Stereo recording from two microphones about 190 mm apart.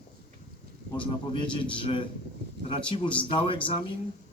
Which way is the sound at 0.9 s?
25° left (ahead or behind).